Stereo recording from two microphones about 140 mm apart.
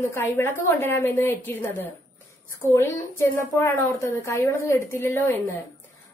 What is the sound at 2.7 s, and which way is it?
A woman's voice, 20° left (ahead or behind).